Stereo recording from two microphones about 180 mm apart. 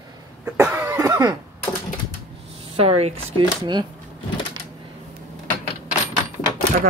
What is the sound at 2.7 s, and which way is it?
Speech, 35° right (ahead or behind).